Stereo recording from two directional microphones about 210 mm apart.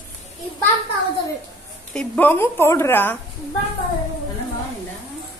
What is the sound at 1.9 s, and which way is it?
A woman's voice, 10° left (ahead or behind).